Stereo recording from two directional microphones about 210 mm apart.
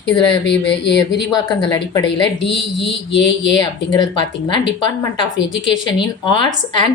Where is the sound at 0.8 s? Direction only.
55° left (ahead or behind).